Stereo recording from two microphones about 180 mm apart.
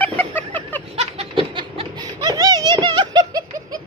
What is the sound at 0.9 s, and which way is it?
Laughter, 35° right (ahead or behind).